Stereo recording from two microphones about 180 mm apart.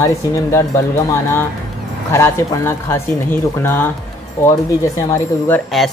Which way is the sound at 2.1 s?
15° left (ahead or behind).